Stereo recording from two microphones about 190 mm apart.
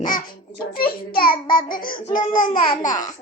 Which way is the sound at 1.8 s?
25° left (ahead or behind).